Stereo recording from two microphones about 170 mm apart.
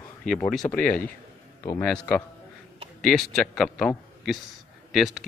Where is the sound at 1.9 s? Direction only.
5° left (ahead or behind).